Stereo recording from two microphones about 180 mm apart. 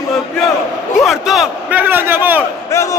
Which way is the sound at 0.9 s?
Centre (ahead or behind).